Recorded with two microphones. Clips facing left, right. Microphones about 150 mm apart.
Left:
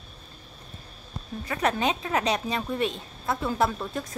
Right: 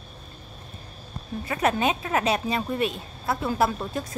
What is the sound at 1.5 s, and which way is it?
A woman's voice, 15° right (ahead or behind).